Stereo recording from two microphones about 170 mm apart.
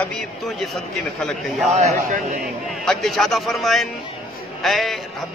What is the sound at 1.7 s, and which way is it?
Speech, 40° right (ahead or behind).